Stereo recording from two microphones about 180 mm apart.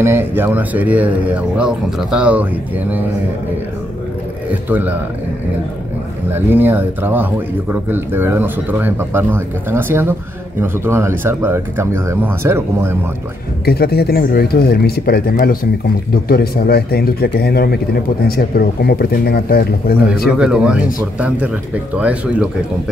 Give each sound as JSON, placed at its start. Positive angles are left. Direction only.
{"t": 0.0, "sound": "speech", "side_deg": -10}
{"t": 4.6, "sound": "speech", "side_deg": -10}
{"t": 6.3, "sound": "speech", "side_deg": -10}
{"t": 13.7, "sound": "speech", "side_deg": 60}
{"t": 20.2, "sound": "speech", "side_deg": -5}